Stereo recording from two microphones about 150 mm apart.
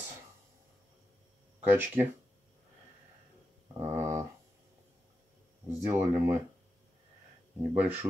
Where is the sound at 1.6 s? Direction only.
15° right (ahead or behind).